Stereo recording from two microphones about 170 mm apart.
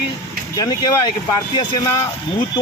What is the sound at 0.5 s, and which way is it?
A man's voice, 25° left (ahead or behind).